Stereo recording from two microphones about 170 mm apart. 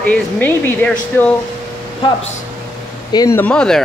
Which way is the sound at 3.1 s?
15° left (ahead or behind).